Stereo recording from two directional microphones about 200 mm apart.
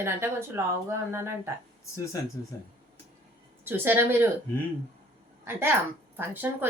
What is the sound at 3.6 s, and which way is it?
Speech, 10° right (ahead or behind).